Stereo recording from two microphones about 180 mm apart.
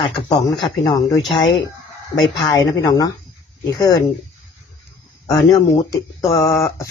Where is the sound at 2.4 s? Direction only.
20° left (ahead or behind).